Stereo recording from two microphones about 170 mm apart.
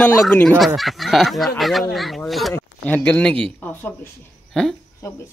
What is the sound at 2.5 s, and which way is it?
A woman's voice, 10° left (ahead or behind).